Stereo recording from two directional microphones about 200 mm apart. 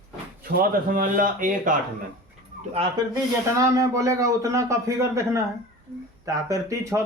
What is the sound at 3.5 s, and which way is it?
Speech, 15° right (ahead or behind).